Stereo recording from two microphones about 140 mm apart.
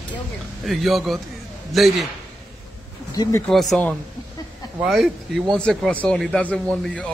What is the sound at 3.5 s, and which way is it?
A man's voice, centre (ahead or behind).